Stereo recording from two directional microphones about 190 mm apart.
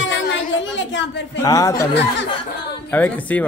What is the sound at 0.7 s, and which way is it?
Speech, 70° left (ahead or behind).